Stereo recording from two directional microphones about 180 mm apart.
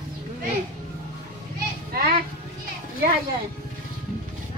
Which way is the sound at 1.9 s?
55° right (ahead or behind).